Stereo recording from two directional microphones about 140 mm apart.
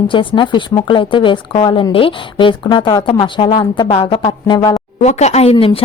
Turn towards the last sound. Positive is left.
turn(degrees=40)  # may be behind; listen again after turning